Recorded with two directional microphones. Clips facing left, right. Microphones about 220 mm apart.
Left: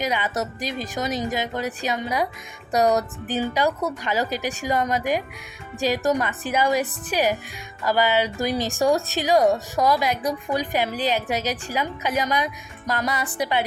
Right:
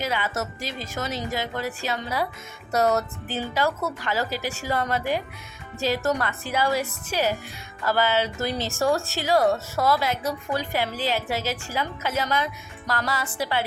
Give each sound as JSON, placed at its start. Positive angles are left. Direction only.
{"t": 0.0, "sound": "speech", "side_deg": 15}
{"t": 12.9, "sound": "music", "side_deg": 20}
{"t": 13.4, "sound": "speech", "side_deg": 20}